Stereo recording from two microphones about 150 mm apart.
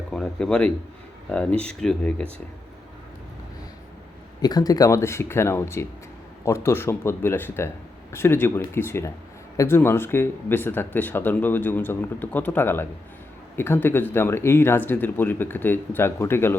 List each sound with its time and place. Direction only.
0.1 s a man's voice: 5° left (ahead or behind)
4.4 s speech: 25° left (ahead or behind)